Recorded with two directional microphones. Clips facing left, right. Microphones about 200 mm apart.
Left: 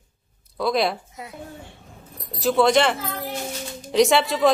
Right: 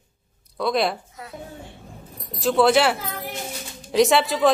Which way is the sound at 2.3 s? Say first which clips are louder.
Even; centre (ahead or behind).